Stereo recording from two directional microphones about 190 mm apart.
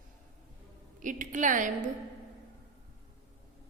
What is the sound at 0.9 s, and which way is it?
Speech, 45° right (ahead or behind).